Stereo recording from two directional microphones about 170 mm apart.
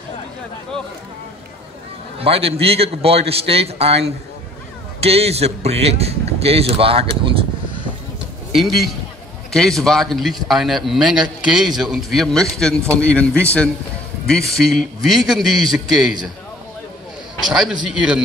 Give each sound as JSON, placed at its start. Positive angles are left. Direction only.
{"t": 2.1, "sound": "a man's voice", "side_deg": -35}
{"t": 8.5, "sound": "a man's voice", "side_deg": 0}
{"t": 17.5, "sound": "a man's voice", "side_deg": 0}